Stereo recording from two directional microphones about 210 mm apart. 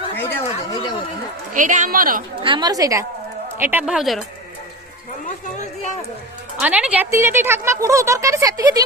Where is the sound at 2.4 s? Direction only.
20° right (ahead or behind); by 4.2 s centre (ahead or behind).